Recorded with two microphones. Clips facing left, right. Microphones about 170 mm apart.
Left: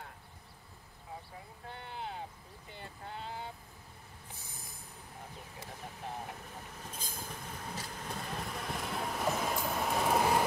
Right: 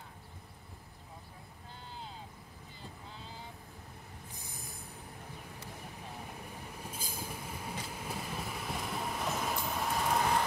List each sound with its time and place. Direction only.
1.7 s a sound: 65° left (ahead or behind)
2.7 s sheep: 65° left (ahead or behind)
4.3 s train: 15° right (ahead or behind)
6.8 s train: 10° right (ahead or behind); by 10.4 s 5° left (ahead or behind)